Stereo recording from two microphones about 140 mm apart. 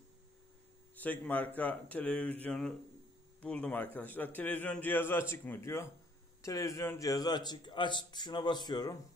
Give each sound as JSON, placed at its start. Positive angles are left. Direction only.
{"t": 0.9, "sound": "a man's voice", "side_deg": 10}